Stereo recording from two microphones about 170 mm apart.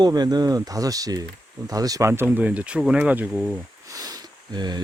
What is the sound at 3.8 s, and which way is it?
Sniff, 20° right (ahead or behind).